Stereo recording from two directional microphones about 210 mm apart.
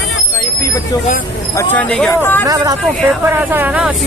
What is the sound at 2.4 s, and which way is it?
Speech, 15° right (ahead or behind).